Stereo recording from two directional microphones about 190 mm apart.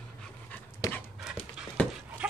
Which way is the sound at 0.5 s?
15° left (ahead or behind).